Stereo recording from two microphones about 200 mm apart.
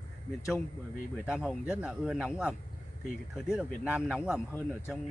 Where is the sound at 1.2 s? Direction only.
Centre (ahead or behind).